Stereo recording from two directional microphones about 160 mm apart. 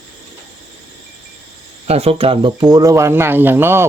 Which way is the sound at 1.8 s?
40° right (ahead or behind).